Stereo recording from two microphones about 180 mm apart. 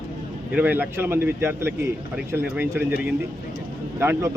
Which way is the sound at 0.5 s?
10° right (ahead or behind).